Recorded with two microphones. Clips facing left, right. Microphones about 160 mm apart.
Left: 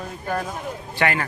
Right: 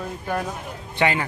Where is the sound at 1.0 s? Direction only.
20° right (ahead or behind).